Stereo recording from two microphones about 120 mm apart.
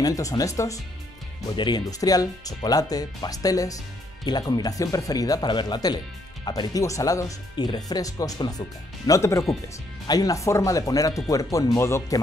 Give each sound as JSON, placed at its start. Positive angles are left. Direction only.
{"t": 0.0, "sound": "speech", "side_deg": 30}